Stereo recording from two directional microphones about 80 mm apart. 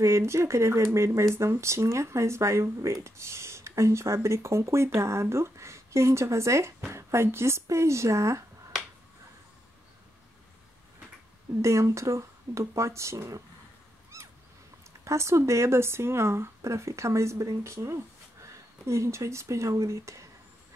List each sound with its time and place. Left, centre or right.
0.0 s speech: right
11.6 s speech: right
14.1 s a sound: right
15.0 s speech: right